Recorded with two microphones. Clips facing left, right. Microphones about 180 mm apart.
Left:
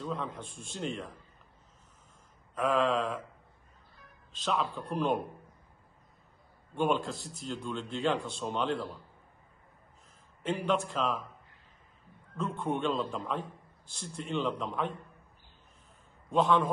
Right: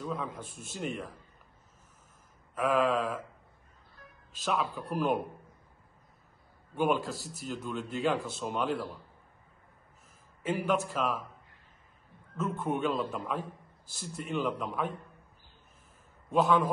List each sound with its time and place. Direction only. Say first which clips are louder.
0.0 s a man's voice: even; centre (ahead or behind)
2.5 s a man's voice: right 1 dB; 5° right (ahead or behind)
4.3 s a man's voice: even; 5° right (ahead or behind)
6.7 s a man's voice: right 1 dB; 5° right (ahead or behind)
10.4 s a man's voice: right 1 dB; 5° right (ahead or behind)
12.4 s a man's voice: right 1 dB; 5° right (ahead or behind)
16.3 s a man's voice: right 1 dB; 5° right (ahead or behind)